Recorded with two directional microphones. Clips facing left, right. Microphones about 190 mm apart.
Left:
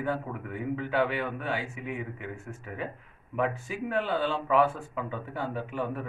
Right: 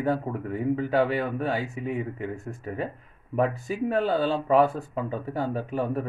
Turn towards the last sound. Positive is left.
turn(degrees=-40)  # may be behind; listen again after turning